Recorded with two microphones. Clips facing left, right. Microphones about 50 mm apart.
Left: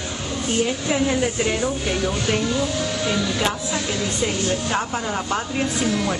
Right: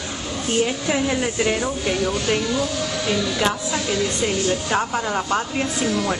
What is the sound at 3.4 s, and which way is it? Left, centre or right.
A woman's voice, centre.